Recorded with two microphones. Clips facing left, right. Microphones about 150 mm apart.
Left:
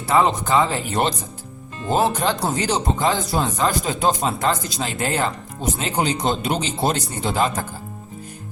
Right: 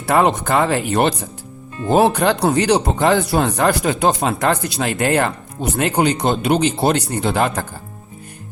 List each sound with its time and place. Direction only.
0.1 s speech: 65° right (ahead or behind)